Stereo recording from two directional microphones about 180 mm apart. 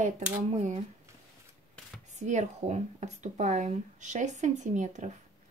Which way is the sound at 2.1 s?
40° right (ahead or behind).